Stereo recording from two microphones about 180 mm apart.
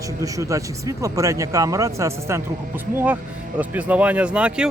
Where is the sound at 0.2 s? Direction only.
20° right (ahead or behind).